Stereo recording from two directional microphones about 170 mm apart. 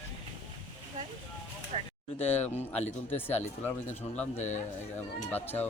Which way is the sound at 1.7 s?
35° right (ahead or behind).